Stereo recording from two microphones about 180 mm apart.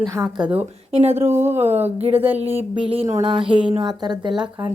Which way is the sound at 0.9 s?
35° right (ahead or behind).